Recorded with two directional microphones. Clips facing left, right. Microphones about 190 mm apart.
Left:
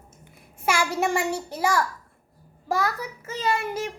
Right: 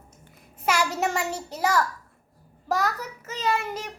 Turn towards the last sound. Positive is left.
turn(degrees=10)  # may be behind; listen again after turning